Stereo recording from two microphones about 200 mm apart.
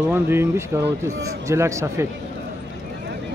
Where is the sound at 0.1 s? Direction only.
10° right (ahead or behind).